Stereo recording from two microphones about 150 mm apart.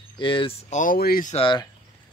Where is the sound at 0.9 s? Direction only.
80° left.